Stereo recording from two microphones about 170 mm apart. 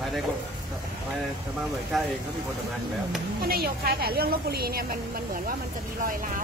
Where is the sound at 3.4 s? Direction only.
65° right (ahead or behind).